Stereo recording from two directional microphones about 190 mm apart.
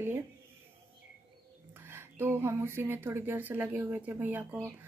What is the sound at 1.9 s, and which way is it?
Speech, 15° right (ahead or behind).